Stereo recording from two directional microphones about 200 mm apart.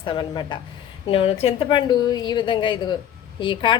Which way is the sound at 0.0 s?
25° left (ahead or behind).